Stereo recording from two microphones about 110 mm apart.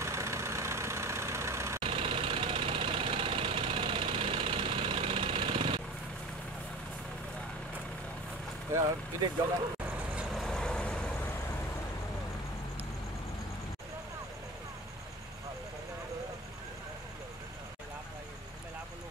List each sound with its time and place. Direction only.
0.0 s vehicle: 25° right (ahead or behind)
1.8 s engine: 55° right (ahead or behind)
10.1 s vehicle: centre (ahead or behind)